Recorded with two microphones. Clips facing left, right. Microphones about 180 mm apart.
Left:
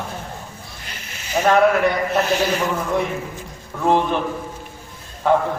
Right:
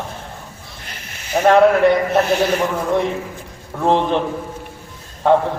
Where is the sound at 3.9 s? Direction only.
30° right (ahead or behind).